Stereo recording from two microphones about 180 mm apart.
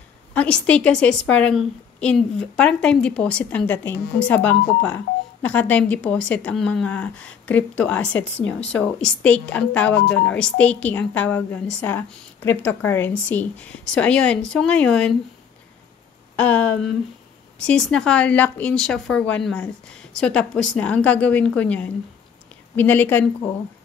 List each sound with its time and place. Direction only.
0.3 s a woman's voice: 5° left (ahead or behind)
9.9 s speech: 90° left
10.2 s a woman's voice: 5° left (ahead or behind)
16.3 s a woman's voice: 5° left (ahead or behind)